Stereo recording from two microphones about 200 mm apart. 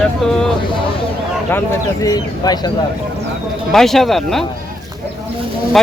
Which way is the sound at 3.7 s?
Centre (ahead or behind).